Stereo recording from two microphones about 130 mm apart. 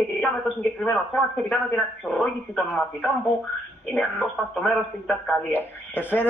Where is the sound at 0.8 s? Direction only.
10° left (ahead or behind).